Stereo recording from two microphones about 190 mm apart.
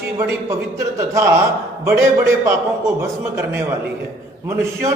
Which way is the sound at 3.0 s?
15° right (ahead or behind).